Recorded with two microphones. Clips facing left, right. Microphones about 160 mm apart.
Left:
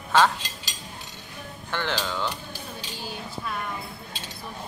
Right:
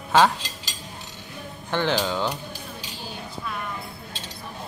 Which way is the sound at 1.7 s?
15° right (ahead or behind).